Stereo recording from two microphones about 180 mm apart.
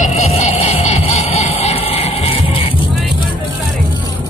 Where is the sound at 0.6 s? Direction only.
35° left (ahead or behind).